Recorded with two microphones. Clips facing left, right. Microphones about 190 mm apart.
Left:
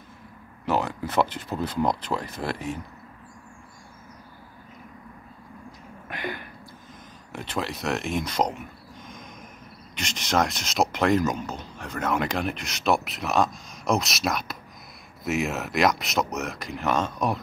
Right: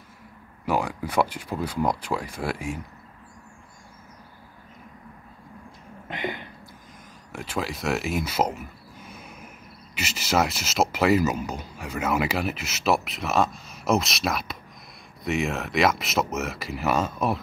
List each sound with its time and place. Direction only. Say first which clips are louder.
0.7 s speech: even; 10° right (ahead or behind)
6.0 s a sound: right 2 dB; 20° right (ahead or behind)
7.3 s speech: even; 5° right (ahead or behind)